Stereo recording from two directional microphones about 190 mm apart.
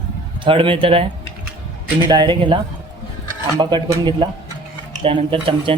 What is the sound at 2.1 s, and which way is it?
Speech, 25° right (ahead or behind).